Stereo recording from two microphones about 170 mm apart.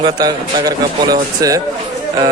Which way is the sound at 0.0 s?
25° right (ahead or behind).